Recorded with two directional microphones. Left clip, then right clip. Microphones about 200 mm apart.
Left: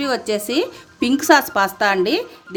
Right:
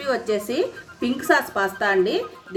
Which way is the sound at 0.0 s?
55° left (ahead or behind).